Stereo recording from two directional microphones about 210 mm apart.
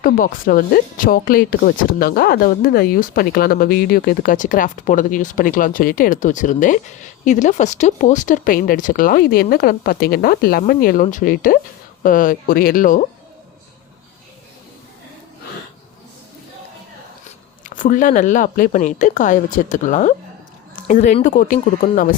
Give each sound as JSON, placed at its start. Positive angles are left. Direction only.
{"t": 0.0, "sound": "speech", "side_deg": 40}
{"t": 17.6, "sound": "speech", "side_deg": 40}